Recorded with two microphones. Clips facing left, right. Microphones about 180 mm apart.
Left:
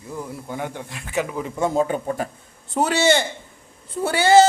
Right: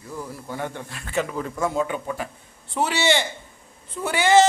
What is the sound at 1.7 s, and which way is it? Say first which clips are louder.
A man's voice: left 4 dB; 40° left (ahead or behind).